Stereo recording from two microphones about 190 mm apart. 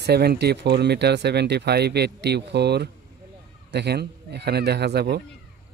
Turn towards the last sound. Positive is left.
turn(degrees=-60)  # may be behind; listen again after turning